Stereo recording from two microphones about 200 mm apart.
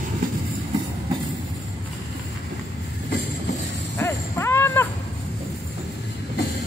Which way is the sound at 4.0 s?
15° left (ahead or behind).